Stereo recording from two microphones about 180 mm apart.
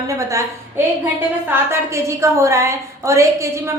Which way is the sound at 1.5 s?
15° right (ahead or behind).